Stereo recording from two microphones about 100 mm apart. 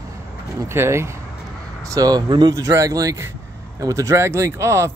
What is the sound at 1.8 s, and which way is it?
Speech, 35° right (ahead or behind).